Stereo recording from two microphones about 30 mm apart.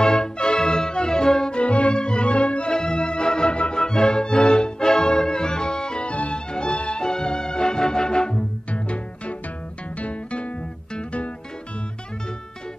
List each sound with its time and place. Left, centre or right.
0.0 s music: left
1.5 s music: left
6.0 s music: left
8.7 s music: left